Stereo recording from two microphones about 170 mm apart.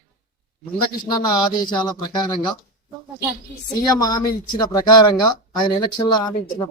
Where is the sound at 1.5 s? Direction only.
25° left (ahead or behind).